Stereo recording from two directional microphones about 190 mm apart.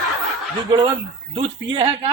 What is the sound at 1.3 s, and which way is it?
Speech, 30° right (ahead or behind).